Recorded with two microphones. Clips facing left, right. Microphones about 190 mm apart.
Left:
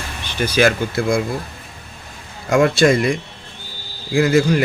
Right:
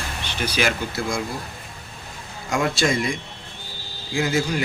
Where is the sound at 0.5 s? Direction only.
55° left (ahead or behind).